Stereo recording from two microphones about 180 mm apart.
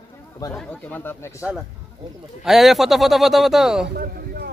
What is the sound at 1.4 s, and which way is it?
A man's voice, 5° right (ahead or behind).